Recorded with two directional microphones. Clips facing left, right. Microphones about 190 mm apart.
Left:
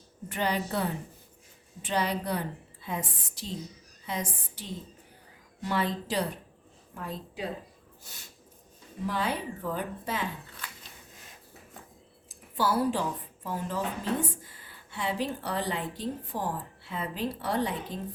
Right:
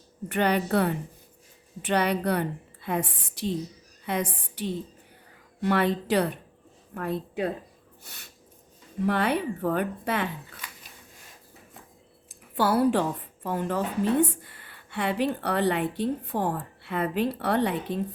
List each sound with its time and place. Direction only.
0.3 s a woman's voice: 65° right (ahead or behind)
12.5 s a woman's voice: 60° right (ahead or behind)